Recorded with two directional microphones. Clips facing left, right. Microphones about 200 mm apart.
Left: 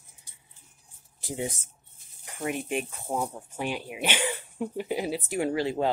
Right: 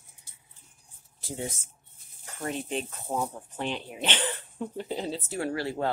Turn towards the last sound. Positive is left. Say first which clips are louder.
# left 3 dB
turn(degrees=20)  # may be behind; listen again after turning